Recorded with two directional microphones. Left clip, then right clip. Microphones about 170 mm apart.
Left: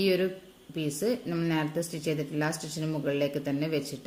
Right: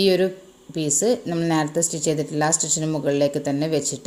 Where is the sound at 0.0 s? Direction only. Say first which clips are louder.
Right 8 dB; 30° right (ahead or behind).